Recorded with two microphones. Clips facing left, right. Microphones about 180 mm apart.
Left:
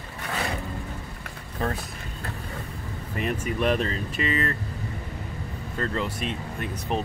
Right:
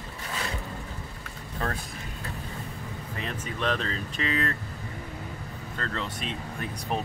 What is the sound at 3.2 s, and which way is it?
Speech, 10° left (ahead or behind).